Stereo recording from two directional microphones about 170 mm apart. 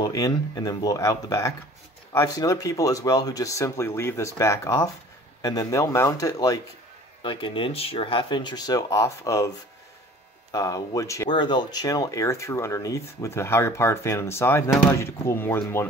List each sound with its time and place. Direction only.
0.0 s speech: 20° left (ahead or behind)
7.2 s speech: 30° left (ahead or behind)
10.5 s speech: 20° left (ahead or behind)